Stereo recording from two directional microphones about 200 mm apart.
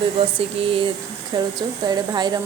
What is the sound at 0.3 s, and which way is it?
A woman's voice, 25° right (ahead or behind).